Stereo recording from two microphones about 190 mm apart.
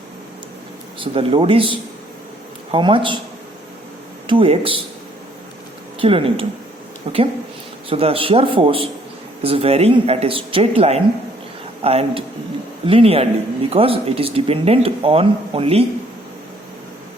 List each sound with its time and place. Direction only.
0.9 s a man's voice: 30° right (ahead or behind)
4.3 s a man's voice: 30° right (ahead or behind)
6.0 s a man's voice: 30° right (ahead or behind)
7.9 s a man's voice: 30° right (ahead or behind)